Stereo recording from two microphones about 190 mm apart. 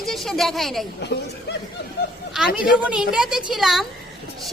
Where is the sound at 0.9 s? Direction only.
65° left (ahead or behind).